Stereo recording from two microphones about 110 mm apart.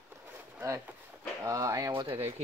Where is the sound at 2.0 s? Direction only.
60° right (ahead or behind).